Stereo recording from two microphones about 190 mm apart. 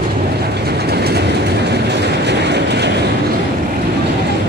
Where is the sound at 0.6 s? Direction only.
55° right (ahead or behind).